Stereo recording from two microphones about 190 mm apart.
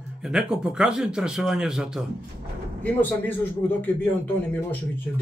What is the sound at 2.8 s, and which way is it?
A man's voice, 10° left (ahead or behind).